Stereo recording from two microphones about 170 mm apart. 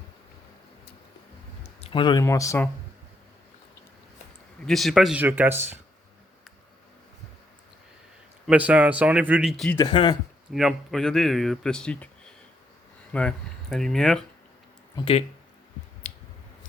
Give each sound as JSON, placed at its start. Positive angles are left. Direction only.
{"t": 1.8, "sound": "speech", "side_deg": 30}
{"t": 2.2, "sound": "speech", "side_deg": 20}
{"t": 4.6, "sound": "speech", "side_deg": 0}
{"t": 8.4, "sound": "speech", "side_deg": -10}
{"t": 9.7, "sound": "speech", "side_deg": 25}
{"t": 10.5, "sound": "speech", "side_deg": 0}
{"t": 14.9, "sound": "speech", "side_deg": 30}
{"t": 16.0, "sound": "squish", "side_deg": 45}